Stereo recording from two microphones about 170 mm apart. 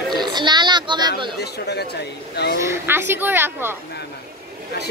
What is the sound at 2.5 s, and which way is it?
Speech, 15° right (ahead or behind).